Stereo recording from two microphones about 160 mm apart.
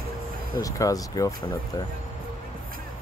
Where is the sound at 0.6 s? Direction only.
20° left (ahead or behind).